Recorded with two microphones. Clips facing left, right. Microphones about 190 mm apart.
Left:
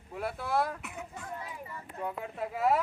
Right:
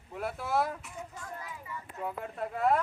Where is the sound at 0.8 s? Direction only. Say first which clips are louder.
Left 1 dB; 65° left (ahead or behind).